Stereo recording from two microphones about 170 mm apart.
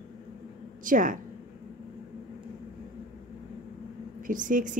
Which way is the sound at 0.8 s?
50° right (ahead or behind).